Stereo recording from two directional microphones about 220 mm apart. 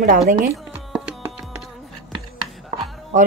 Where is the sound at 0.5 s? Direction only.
10° right (ahead or behind).